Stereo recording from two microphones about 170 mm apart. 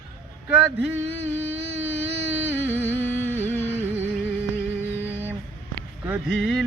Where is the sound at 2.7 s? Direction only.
10° left (ahead or behind).